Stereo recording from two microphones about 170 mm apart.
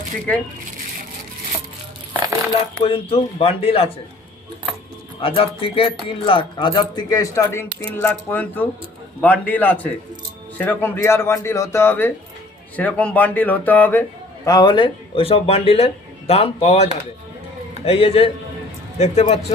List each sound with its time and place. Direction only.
0.3 s a man's voice: 5° left (ahead or behind)
2.7 s speech: 35° left (ahead or behind)
5.2 s a man's voice: 30° left (ahead or behind); by 14.0 s 10° left (ahead or behind)
14.4 s speech: 25° left (ahead or behind); by 19.2 s 40° left (ahead or behind)